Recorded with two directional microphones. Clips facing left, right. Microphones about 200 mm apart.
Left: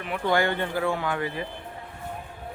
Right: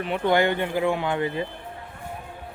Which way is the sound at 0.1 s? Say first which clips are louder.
Right 3 dB; 20° right (ahead or behind).